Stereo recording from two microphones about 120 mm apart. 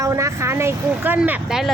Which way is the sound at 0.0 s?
25° right (ahead or behind).